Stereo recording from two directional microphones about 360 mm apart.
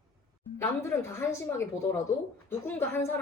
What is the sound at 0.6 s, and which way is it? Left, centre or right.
A woman's voice, centre.